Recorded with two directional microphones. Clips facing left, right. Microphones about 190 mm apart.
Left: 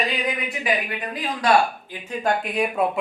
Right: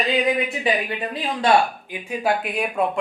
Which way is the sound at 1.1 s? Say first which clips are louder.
Right 1 dB; 30° right (ahead or behind).